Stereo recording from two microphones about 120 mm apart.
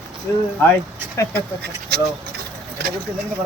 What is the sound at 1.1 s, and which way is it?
Speech, 25° left (ahead or behind).